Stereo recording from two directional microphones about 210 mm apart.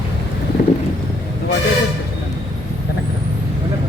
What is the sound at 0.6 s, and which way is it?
Wind, 35° left (ahead or behind).